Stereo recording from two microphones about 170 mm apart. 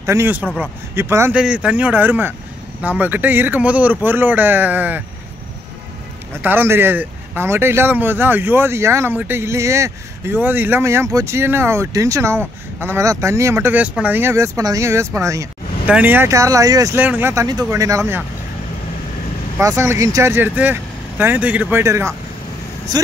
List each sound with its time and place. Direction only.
0.0 s speech: 15° right (ahead or behind)
6.4 s speech: 10° right (ahead or behind)
19.6 s speech: 15° right (ahead or behind)